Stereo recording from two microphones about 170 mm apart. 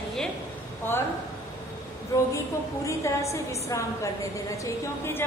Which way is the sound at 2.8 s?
15° left (ahead or behind).